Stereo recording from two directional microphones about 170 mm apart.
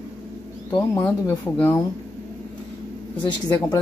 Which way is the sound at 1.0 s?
10° left (ahead or behind).